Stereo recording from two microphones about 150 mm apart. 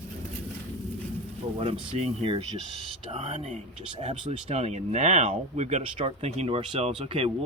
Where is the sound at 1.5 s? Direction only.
40° right (ahead or behind).